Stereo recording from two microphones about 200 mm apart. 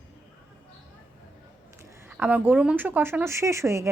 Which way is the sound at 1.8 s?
10° right (ahead or behind).